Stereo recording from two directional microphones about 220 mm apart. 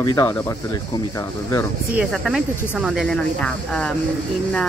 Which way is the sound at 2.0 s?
Centre (ahead or behind).